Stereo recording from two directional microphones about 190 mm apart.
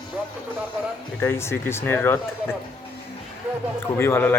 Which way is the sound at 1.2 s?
15° left (ahead or behind).